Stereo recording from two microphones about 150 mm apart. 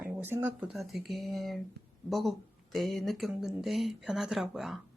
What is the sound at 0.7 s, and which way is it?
Speech, centre (ahead or behind).